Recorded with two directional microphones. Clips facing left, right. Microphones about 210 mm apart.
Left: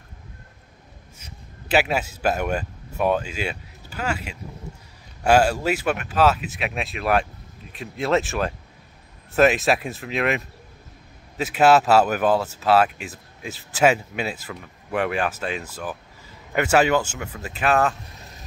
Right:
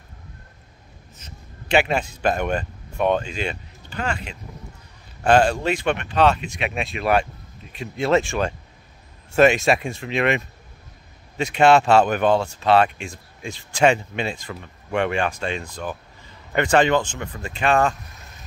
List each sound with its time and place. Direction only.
1.1 s speech: 5° left (ahead or behind)